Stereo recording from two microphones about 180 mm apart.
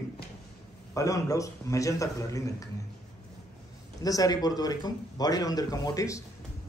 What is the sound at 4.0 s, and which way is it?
A man's voice, 20° left (ahead or behind).